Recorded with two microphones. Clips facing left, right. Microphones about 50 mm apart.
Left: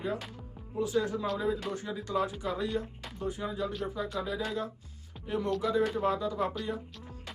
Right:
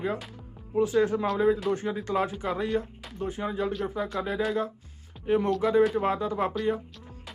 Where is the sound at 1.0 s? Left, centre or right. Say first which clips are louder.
Right 7 dB; right.